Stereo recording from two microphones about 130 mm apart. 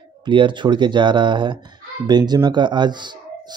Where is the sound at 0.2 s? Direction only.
40° right (ahead or behind).